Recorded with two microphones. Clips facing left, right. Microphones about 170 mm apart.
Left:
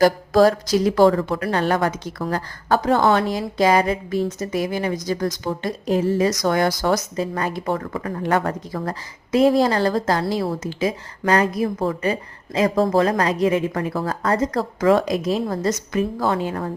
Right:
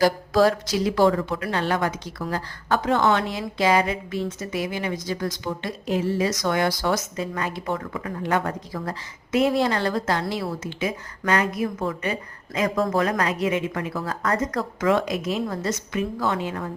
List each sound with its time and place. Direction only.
0.0 s a woman's voice: 45° left (ahead or behind)
2.6 s a woman's voice: 35° left (ahead or behind)